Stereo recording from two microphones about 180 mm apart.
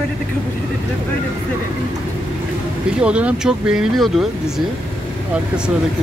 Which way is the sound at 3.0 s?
5° right (ahead or behind).